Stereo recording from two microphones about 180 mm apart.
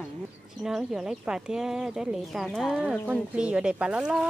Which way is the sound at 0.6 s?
5° right (ahead or behind).